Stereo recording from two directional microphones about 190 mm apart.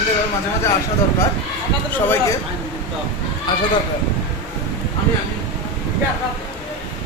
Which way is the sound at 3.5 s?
25° left (ahead or behind).